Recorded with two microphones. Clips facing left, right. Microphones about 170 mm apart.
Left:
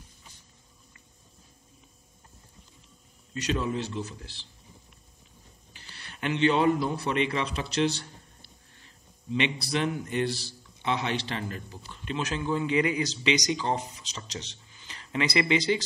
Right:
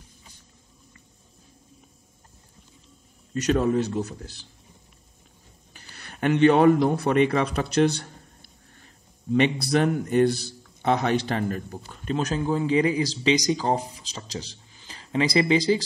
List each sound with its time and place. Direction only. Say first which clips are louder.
3.4 s a man's voice: right 8 dB; 50° right (ahead or behind)
5.7 s speech: right 4 dB; 45° right (ahead or behind)